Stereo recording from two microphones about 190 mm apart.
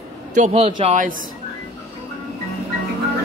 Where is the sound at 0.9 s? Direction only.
45° right (ahead or behind).